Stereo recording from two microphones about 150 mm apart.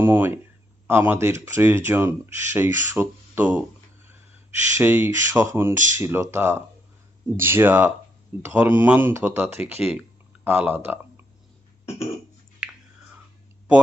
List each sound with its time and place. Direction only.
0.0 s speech: 15° right (ahead or behind)
4.8 s speech: 15° right (ahead or behind)
12.6 s chewing: 5° right (ahead or behind)